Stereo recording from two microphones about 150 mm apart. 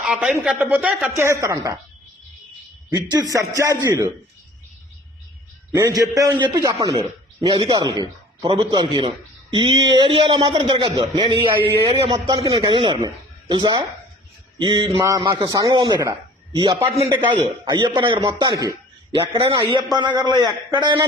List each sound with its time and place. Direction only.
0.0 s speech: 5° right (ahead or behind)
1.1 s speech: 15° right (ahead or behind)
2.9 s a man's voice: 25° right (ahead or behind)
5.7 s a man's voice: 25° right (ahead or behind)